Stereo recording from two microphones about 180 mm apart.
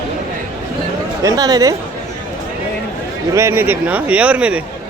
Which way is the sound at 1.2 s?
20° right (ahead or behind).